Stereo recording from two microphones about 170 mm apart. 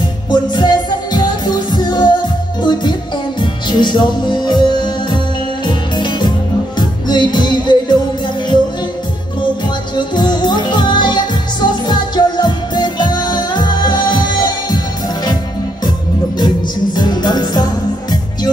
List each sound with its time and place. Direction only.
0.3 s music: 25° left (ahead or behind)
9.9 s music: 25° left (ahead or behind)
16.3 s music: 25° left (ahead or behind)